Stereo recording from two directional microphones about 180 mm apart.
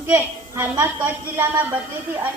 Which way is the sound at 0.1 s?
15° right (ahead or behind).